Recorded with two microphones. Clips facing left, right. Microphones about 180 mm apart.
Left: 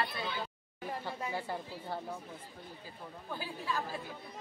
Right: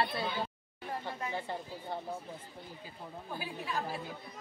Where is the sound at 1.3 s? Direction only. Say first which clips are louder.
Left 1 dB; 10° left (ahead or behind).